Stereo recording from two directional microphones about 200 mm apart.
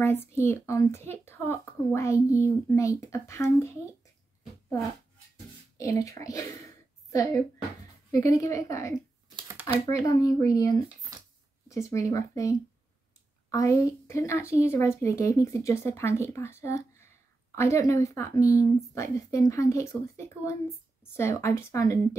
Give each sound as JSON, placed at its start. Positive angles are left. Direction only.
{"t": 0.0, "sound": "speech", "side_deg": 10}
{"t": 5.8, "sound": "a woman's voice", "side_deg": 15}
{"t": 9.3, "sound": "shuffling cards", "side_deg": -25}
{"t": 9.9, "sound": "speech", "side_deg": 15}